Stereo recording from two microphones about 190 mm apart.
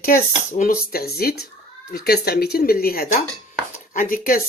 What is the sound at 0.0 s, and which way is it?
Speech, 45° left (ahead or behind).